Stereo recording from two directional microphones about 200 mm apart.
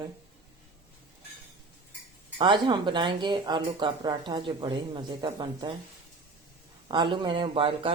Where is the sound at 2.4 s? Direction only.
25° right (ahead or behind).